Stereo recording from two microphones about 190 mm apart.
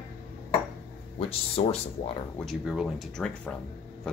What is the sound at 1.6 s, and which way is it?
Speech, 30° left (ahead or behind).